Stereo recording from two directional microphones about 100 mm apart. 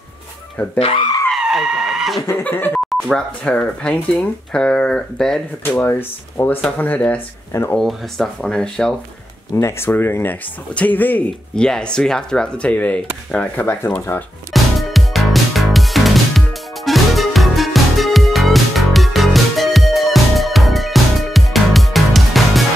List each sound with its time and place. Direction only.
0.7 s speech: 70° left (ahead or behind)
1.3 s a sound: 5° right (ahead or behind)
2.3 s speech: 20° left (ahead or behind)
5.6 s speech: 25° left (ahead or behind); by 8.9 s 10° left (ahead or behind)
9.6 s speech: 25° left (ahead or behind)
14.5 s music: centre (ahead or behind)